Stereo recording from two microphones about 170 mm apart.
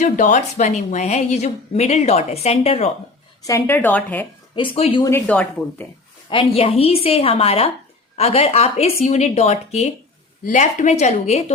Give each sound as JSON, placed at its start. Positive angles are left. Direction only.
{"t": 0.0, "sound": "a woman's voice", "side_deg": 45}
{"t": 3.4, "sound": "a woman's voice", "side_deg": 15}
{"t": 4.5, "sound": "a woman's voice", "side_deg": 30}
{"t": 5.0, "sound": "a woman's voice", "side_deg": 15}
{"t": 6.3, "sound": "a woman's voice", "side_deg": 35}